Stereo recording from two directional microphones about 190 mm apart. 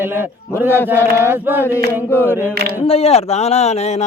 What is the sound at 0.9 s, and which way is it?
Speech, 10° right (ahead or behind).